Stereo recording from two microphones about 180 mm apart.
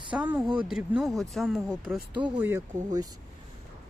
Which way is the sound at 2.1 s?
25° right (ahead or behind).